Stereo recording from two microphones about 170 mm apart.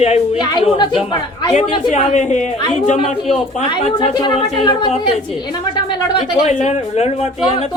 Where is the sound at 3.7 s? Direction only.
30° left (ahead or behind).